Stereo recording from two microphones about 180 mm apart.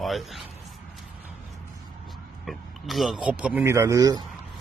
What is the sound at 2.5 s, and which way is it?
Speech, centre (ahead or behind).